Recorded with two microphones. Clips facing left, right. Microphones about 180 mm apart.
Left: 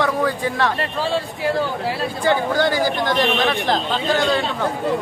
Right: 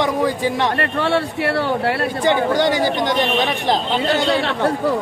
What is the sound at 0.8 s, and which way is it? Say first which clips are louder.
Speech: right 3 dB; 65° right (ahead or behind).